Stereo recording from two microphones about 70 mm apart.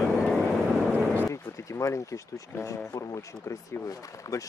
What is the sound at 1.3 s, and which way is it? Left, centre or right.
Speech, left.